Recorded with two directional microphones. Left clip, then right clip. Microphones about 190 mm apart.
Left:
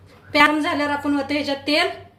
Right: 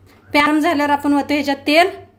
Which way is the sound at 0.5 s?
65° right (ahead or behind).